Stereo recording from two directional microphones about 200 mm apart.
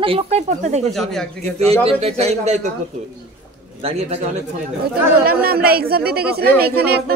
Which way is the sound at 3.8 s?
30° right (ahead or behind).